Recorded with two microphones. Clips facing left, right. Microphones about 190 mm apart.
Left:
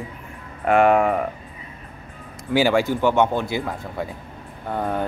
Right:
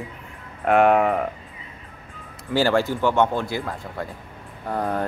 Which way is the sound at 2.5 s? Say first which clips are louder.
Left 2 dB; 15° left (ahead or behind).